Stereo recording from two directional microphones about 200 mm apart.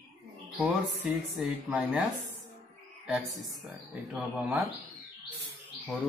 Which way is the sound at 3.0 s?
Centre (ahead or behind).